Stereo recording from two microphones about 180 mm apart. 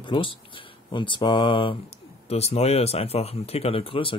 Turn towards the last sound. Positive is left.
turn(degrees=30)  # may be behind; listen again after turning